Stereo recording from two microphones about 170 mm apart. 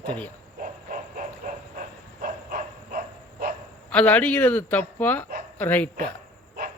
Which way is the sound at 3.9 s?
10° left (ahead or behind).